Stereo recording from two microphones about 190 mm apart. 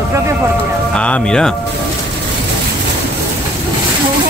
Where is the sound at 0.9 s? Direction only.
5° left (ahead or behind).